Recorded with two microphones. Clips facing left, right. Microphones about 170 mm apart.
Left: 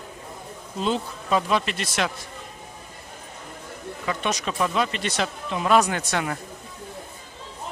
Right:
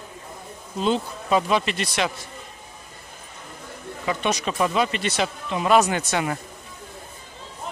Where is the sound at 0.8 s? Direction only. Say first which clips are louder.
Right 2 dB; 5° right (ahead or behind).